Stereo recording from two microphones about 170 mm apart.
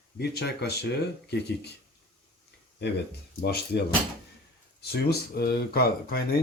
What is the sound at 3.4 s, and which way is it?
Speech, 75° left (ahead or behind).